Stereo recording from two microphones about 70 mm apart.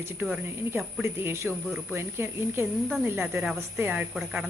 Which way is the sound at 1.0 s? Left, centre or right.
Right.